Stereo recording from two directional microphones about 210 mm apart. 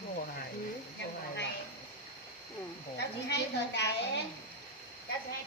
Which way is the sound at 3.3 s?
55° left (ahead or behind).